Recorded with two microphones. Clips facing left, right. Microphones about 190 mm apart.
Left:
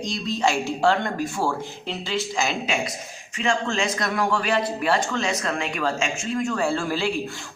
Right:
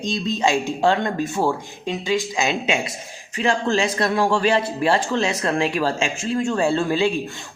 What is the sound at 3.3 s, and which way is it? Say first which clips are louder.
Speech: right 4 dB; 35° right (ahead or behind).